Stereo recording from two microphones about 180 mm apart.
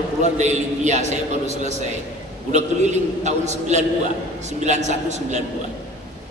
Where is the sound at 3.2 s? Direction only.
40° right (ahead or behind).